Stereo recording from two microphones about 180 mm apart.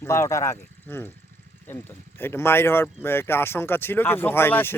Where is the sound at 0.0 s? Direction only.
15° left (ahead or behind).